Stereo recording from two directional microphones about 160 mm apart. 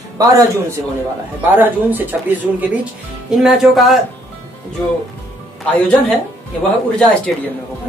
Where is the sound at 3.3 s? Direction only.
Centre (ahead or behind).